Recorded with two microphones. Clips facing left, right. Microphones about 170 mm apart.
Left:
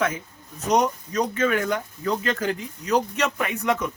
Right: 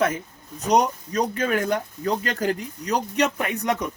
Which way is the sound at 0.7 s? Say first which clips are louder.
Right 1 dB; 35° right (ahead or behind).